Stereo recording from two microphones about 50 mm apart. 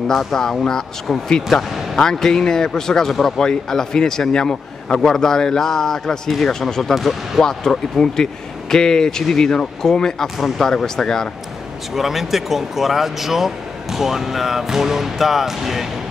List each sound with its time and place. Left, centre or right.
0.1 s speech: centre
11.9 s speech: centre